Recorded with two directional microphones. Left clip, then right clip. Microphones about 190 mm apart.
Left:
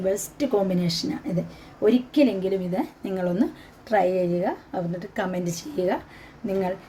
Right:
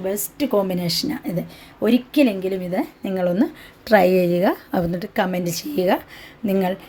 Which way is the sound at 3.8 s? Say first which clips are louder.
Right 6 dB; 55° right (ahead or behind).